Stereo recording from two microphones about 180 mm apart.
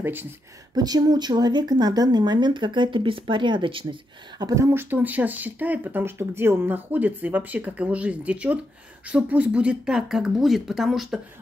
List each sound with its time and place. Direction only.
0.0 s speech: 10° right (ahead or behind)
0.7 s speech: 20° right (ahead or behind); by 11.1 s centre (ahead or behind)